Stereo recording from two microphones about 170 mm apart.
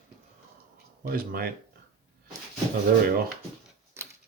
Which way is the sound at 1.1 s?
60° right (ahead or behind).